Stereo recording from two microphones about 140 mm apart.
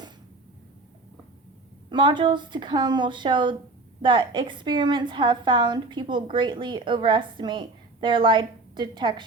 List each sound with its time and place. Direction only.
1.9 s a woman's voice: 30° right (ahead or behind)